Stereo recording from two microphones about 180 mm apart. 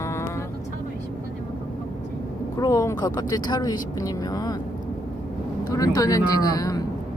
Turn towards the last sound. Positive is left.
turn(degrees=20)  # may be behind; listen again after turning